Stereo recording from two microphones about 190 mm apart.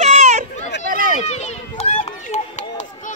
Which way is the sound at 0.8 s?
50° right (ahead or behind).